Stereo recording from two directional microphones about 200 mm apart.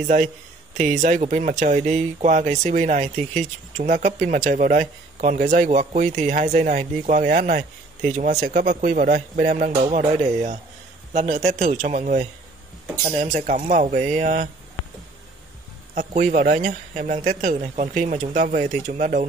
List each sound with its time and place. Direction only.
0.0 s speech: 35° right (ahead or behind)
15.9 s speech: 40° right (ahead or behind)